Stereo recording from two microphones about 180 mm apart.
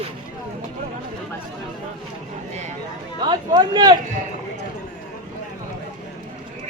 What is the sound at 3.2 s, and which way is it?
Speech, 25° right (ahead or behind).